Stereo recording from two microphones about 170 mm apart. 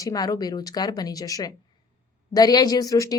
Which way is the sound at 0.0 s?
20° left (ahead or behind).